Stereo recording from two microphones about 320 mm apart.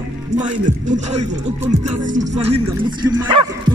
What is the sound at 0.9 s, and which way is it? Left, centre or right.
Speech, right.